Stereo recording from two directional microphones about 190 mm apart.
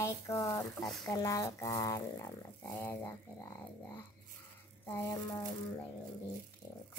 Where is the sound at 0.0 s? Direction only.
15° left (ahead or behind).